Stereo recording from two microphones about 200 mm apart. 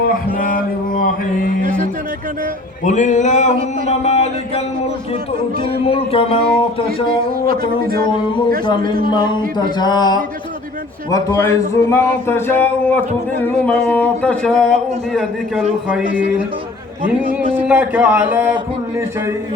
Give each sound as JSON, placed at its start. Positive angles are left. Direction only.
{"t": 0.0, "sound": "music", "side_deg": 45}
{"t": 2.8, "sound": "a sound", "side_deg": 35}
{"t": 5.8, "sound": "speech", "side_deg": 30}
{"t": 8.6, "sound": "speech", "side_deg": 20}
{"t": 17.3, "sound": "speech", "side_deg": -5}